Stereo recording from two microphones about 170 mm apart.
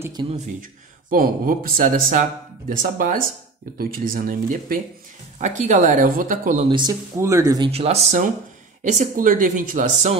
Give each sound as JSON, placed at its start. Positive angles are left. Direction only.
{"t": 0.0, "sound": "speech", "side_deg": -25}
{"t": 1.1, "sound": "speech", "side_deg": -55}
{"t": 6.7, "sound": "speech", "side_deg": -25}
{"t": 7.7, "sound": "speech", "side_deg": -35}